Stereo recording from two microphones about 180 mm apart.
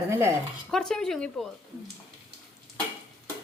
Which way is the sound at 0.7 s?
5° left (ahead or behind).